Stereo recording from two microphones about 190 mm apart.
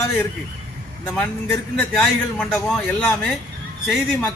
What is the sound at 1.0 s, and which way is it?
Speech, 10° left (ahead or behind).